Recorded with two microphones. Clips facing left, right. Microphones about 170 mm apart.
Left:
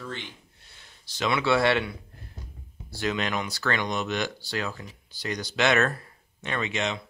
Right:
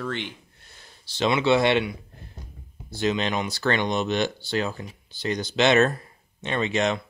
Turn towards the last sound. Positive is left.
turn(degrees=-45)  # may be behind; listen again after turning